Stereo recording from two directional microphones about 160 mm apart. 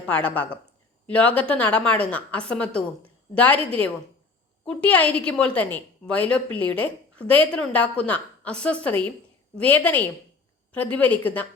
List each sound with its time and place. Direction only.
0.0 s a woman's voice: 10° left (ahead or behind)